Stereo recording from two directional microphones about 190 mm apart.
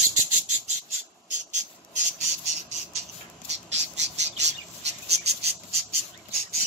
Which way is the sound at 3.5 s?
35° right (ahead or behind).